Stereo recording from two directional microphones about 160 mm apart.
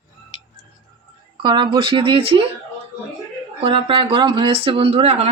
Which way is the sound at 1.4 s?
30° right (ahead or behind).